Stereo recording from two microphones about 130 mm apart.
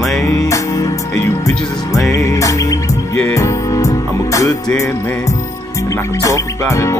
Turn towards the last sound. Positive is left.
turn(degrees=25)  # may be behind; listen again after turning